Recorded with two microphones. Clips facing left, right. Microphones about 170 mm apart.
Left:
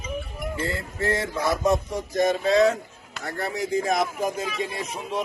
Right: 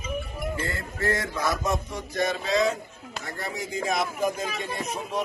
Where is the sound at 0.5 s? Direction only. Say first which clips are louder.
Left 2 dB; 25° left (ahead or behind).